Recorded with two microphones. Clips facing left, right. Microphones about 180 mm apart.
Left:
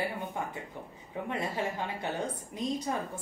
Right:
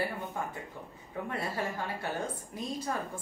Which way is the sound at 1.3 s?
20° left (ahead or behind).